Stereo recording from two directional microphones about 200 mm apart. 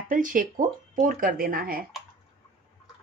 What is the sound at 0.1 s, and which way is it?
Speech, 40° right (ahead or behind).